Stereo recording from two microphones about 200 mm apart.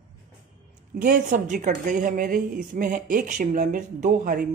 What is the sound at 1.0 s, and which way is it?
A woman's voice, 40° right (ahead or behind).